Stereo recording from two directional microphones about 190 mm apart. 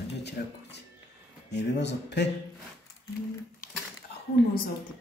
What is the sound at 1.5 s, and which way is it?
Speech, 65° left (ahead or behind).